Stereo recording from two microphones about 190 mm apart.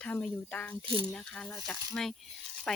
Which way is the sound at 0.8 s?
25° right (ahead or behind).